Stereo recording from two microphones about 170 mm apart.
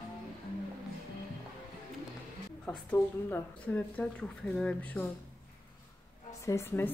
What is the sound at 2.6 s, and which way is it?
Speech, 10° left (ahead or behind).